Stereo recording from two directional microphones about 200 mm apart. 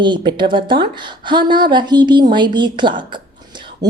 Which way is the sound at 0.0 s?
25° right (ahead or behind).